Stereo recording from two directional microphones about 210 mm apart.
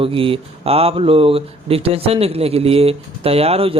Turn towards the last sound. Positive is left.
turn(degrees=-30)  # may be behind; listen again after turning